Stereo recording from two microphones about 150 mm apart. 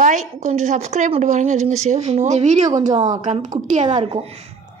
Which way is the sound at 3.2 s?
55° right (ahead or behind).